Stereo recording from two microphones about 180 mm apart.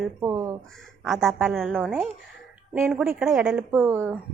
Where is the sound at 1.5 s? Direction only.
Centre (ahead or behind).